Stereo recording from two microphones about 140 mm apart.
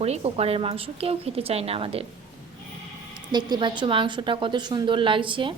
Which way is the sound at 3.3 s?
35° right (ahead or behind).